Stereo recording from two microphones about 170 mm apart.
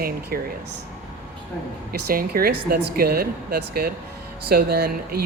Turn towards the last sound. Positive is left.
turn(degrees=-65)  # may be behind; listen again after turning